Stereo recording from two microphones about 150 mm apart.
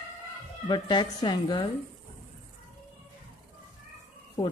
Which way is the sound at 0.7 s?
30° left (ahead or behind).